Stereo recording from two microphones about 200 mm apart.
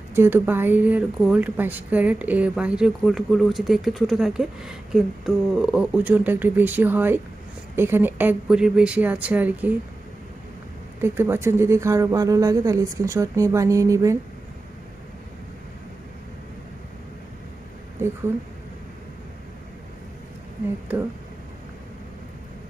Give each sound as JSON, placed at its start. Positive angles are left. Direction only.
{"t": 0.1, "sound": "speech", "side_deg": -10}
{"t": 11.0, "sound": "speech", "side_deg": -10}